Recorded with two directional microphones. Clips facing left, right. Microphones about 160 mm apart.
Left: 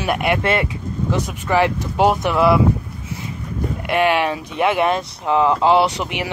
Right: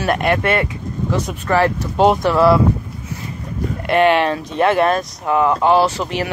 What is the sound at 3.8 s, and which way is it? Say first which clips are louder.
Speech: right 4 dB; 10° left (ahead or behind).